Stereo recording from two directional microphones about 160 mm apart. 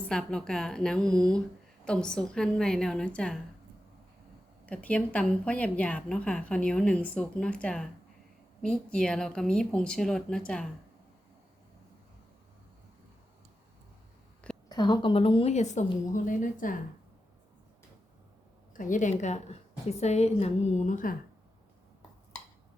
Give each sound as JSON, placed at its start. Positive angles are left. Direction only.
{"t": 0.1, "sound": "speech", "side_deg": 5}
{"t": 4.6, "sound": "speech", "side_deg": 10}
{"t": 14.7, "sound": "a woman's voice", "side_deg": 25}
{"t": 18.7, "sound": "a woman's voice", "side_deg": 55}